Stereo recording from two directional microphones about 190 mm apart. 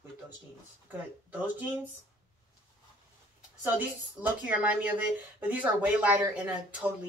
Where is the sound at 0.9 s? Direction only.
10° right (ahead or behind).